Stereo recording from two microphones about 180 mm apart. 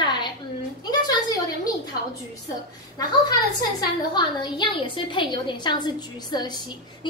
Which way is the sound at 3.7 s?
25° left (ahead or behind).